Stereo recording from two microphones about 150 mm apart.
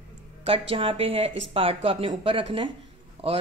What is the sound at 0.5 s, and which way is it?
A woman's voice, 35° right (ahead or behind).